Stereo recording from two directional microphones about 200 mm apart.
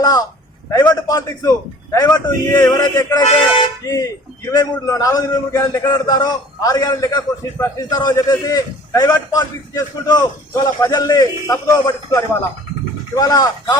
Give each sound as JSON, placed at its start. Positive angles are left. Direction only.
{"t": 0.0, "sound": "a man's voice", "side_deg": 20}
{"t": 3.2, "sound": "a man's voice", "side_deg": 25}